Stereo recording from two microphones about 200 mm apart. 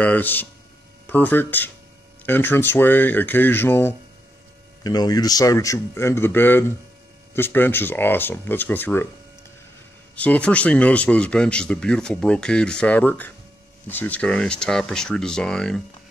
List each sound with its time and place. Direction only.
0.0 s a man's voice: 10° left (ahead or behind)
10.1 s speech: 5° left (ahead or behind)